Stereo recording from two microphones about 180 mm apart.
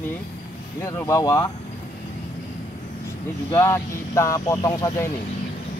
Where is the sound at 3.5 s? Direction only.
15° left (ahead or behind).